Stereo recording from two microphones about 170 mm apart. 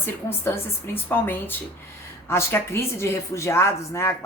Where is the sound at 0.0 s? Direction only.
15° left (ahead or behind).